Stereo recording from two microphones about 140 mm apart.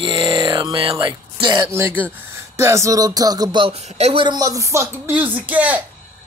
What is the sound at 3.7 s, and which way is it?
Speech, 50° right (ahead or behind).